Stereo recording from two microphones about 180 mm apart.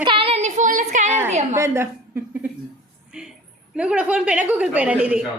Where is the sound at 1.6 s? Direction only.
15° right (ahead or behind).